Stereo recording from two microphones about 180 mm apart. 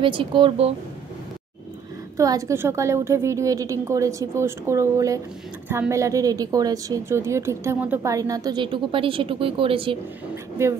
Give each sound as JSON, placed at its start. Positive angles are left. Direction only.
{"t": 0.0, "sound": "a woman's voice", "side_deg": -30}
{"t": 2.1, "sound": "a woman's voice", "side_deg": -20}